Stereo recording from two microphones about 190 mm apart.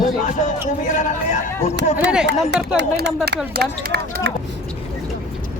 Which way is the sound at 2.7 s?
65° right (ahead or behind).